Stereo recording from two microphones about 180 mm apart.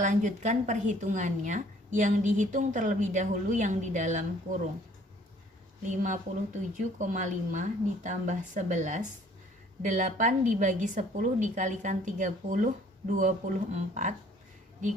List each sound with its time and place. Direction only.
0.0 s a woman's voice: 45° right (ahead or behind)
5.9 s a woman's voice: 45° right (ahead or behind)